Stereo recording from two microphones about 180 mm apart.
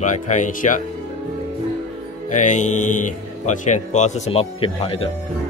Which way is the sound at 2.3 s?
40° left (ahead or behind).